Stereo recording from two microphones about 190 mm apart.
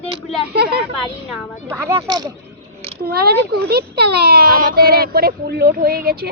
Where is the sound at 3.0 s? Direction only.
55° right (ahead or behind).